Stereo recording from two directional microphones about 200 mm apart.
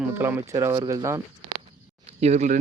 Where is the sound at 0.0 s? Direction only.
10° right (ahead or behind).